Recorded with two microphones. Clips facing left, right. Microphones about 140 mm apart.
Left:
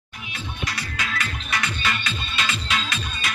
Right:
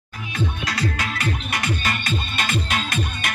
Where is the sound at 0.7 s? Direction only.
75° right (ahead or behind).